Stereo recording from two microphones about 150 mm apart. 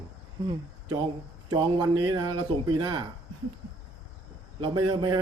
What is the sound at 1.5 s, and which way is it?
A man's voice, 30° right (ahead or behind).